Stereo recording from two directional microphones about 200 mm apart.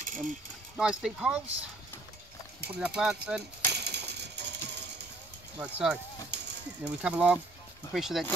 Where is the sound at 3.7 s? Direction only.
55° right (ahead or behind).